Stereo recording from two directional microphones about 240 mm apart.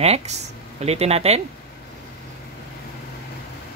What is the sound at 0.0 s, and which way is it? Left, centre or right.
Speech, right.